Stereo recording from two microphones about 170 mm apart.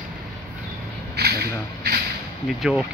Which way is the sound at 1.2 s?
70° right (ahead or behind).